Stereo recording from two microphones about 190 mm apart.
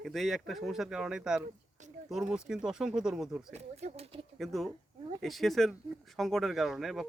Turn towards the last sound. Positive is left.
turn(degrees=0)  # may be behind; listen again after turning